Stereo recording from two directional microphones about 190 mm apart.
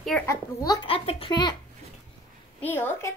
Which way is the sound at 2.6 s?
10° left (ahead or behind).